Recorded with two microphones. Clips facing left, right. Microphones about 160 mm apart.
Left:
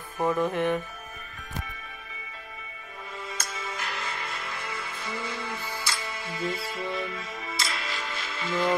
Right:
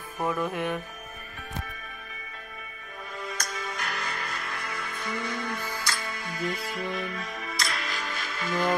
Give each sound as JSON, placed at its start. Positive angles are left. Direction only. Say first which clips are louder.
{"t": 0.4, "sound": "music", "louder": "left 4 dB", "side_deg": -10}
{"t": 3.3, "sound": "music", "louder": "right 2 dB", "side_deg": 25}